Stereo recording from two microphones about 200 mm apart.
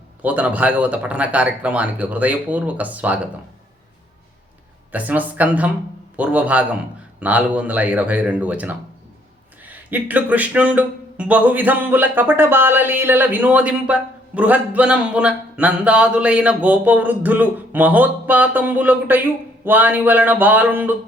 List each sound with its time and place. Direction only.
0.2 s speech: 5° right (ahead or behind)
4.9 s speech: 10° right (ahead or behind)